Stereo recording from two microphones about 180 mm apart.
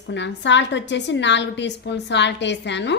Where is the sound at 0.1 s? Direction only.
80° left.